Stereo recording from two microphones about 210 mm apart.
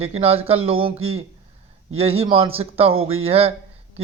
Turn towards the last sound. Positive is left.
turn(degrees=-30)  # may be behind; listen again after turning